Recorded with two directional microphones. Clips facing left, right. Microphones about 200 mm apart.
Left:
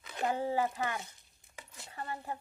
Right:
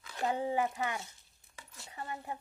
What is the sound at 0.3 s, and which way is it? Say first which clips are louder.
Speech: even; 20° right (ahead or behind).